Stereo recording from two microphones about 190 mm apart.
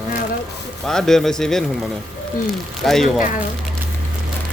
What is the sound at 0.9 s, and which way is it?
Speech, centre (ahead or behind).